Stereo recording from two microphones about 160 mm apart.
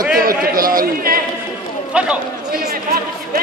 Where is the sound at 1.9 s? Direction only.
5° right (ahead or behind).